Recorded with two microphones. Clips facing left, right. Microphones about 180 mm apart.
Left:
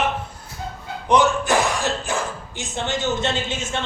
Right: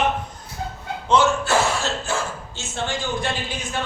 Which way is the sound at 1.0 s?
15° left (ahead or behind).